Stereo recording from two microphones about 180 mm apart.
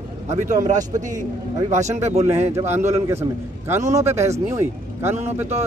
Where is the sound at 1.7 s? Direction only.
40° right (ahead or behind).